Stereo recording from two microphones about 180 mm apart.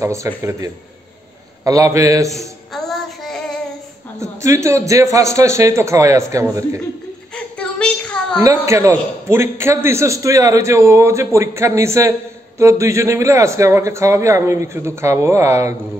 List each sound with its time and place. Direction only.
0.0 s a man's voice: 15° right (ahead or behind)
2.7 s child singing: centre (ahead or behind)
4.2 s a man's voice: 15° right (ahead or behind)
7.3 s a sound: 5° left (ahead or behind)
8.4 s a man's voice: 15° right (ahead or behind)